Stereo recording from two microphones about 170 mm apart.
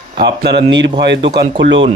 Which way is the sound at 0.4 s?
75° right (ahead or behind).